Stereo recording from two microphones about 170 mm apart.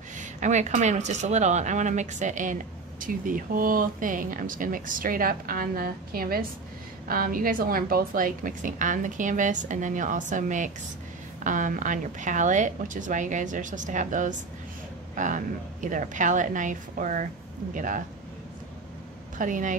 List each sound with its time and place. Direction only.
0.2 s a woman's voice: 45° right (ahead or behind)
19.3 s speech: 50° right (ahead or behind)